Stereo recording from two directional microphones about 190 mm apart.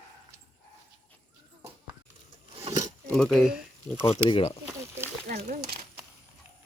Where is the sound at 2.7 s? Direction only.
20° right (ahead or behind).